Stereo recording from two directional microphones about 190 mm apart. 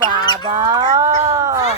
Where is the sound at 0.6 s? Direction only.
20° right (ahead or behind).